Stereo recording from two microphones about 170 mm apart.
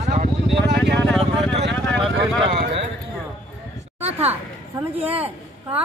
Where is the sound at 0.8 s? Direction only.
Centre (ahead or behind).